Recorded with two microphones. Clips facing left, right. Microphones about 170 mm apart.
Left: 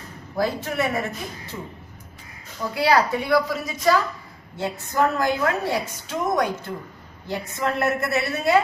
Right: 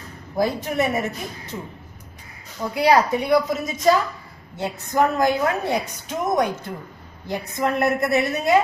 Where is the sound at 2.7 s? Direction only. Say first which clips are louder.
Right 2 dB; 20° right (ahead or behind).